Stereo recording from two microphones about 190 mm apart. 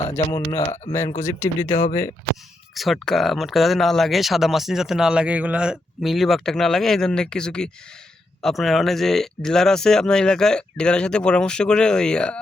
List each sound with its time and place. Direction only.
0.3 s speech: 20° left (ahead or behind)
2.7 s speech: centre (ahead or behind)